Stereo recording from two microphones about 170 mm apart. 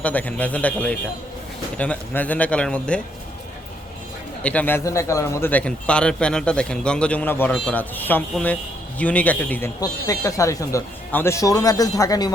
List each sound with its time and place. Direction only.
0.0 s speech: 10° left (ahead or behind)
4.4 s speech: 10° left (ahead or behind)